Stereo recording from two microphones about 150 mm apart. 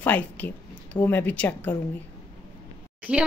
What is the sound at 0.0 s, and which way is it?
A woman's voice, 10° left (ahead or behind).